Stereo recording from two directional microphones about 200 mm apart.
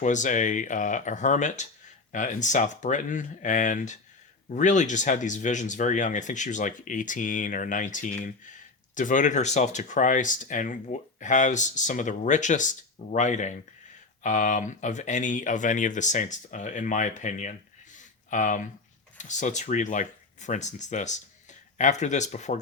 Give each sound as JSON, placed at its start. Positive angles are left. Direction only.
{"t": 0.0, "sound": "speech", "side_deg": 40}
{"t": 17.9, "sound": "a sound", "side_deg": 40}
{"t": 19.1, "sound": "speech", "side_deg": 35}